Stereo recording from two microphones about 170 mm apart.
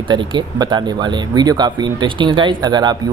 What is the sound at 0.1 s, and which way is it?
Speech, 25° right (ahead or behind).